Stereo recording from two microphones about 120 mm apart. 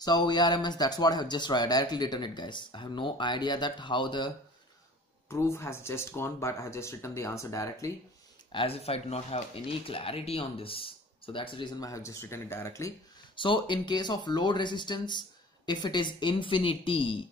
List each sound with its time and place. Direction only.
0.0 s speech: 35° left (ahead or behind)
5.3 s speech: 20° left (ahead or behind)
8.5 s speech: 50° left (ahead or behind)
11.8 s speech: 25° left (ahead or behind)
13.4 s speech: 45° left (ahead or behind)